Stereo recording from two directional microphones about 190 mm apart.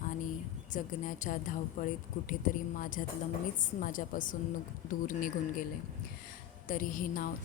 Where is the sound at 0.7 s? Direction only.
45° left (ahead or behind).